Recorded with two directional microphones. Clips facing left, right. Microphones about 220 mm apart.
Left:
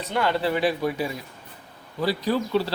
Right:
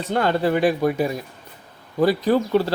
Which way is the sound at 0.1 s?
45° right (ahead or behind).